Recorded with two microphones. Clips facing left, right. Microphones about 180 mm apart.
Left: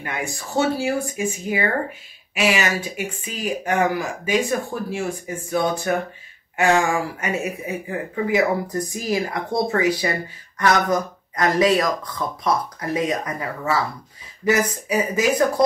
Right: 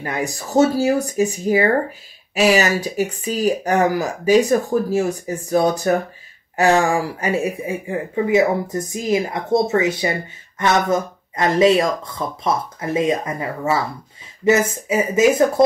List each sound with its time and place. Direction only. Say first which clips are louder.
0.0 s speech: right 4 dB; 40° right (ahead or behind)